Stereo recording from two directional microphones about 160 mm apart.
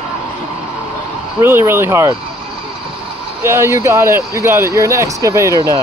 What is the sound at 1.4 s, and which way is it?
Speech, 15° right (ahead or behind).